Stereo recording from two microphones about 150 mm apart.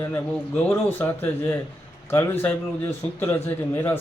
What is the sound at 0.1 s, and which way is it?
A man's voice, 15° left (ahead or behind).